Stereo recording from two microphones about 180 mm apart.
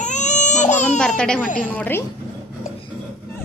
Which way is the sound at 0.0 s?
40° left (ahead or behind).